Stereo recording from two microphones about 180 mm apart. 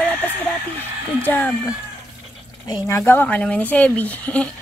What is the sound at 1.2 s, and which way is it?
A woman's voice, 10° left (ahead or behind).